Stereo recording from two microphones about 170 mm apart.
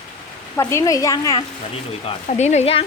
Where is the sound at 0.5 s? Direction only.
20° left (ahead or behind).